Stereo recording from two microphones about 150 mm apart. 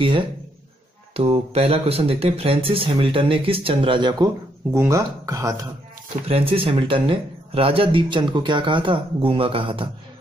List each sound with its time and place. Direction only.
1.1 s speech: 40° right (ahead or behind)
4.7 s speech: 20° right (ahead or behind)
6.2 s speech: 40° right (ahead or behind)